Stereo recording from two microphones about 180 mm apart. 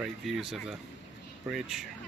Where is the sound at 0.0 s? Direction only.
Centre (ahead or behind).